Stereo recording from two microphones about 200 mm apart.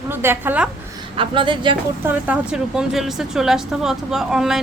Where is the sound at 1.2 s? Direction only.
25° right (ahead or behind).